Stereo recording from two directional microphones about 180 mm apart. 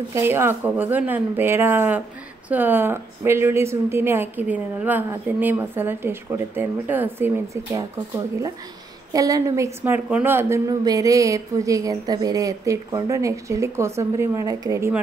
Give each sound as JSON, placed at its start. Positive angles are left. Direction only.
{"t": 0.1, "sound": "a woman's voice", "side_deg": -15}
{"t": 9.1, "sound": "a woman's voice", "side_deg": -20}